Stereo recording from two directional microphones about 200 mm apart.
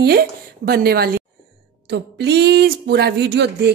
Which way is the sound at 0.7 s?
50° right (ahead or behind).